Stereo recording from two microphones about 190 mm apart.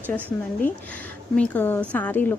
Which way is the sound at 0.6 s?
10° left (ahead or behind).